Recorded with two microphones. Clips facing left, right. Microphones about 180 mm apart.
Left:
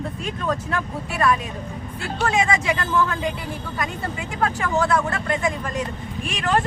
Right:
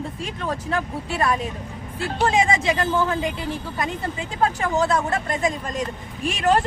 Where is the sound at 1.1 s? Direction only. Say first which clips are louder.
Left 2 dB; 35° right (ahead or behind).